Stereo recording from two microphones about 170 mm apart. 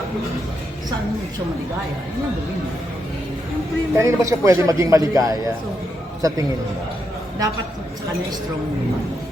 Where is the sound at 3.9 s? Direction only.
20° right (ahead or behind).